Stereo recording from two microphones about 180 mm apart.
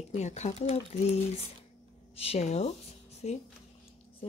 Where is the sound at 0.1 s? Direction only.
40° left (ahead or behind).